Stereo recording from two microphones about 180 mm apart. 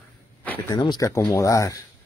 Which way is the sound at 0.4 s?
10° left (ahead or behind).